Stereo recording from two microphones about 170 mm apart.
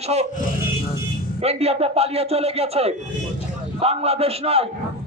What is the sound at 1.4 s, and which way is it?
A man's voice, 35° right (ahead or behind).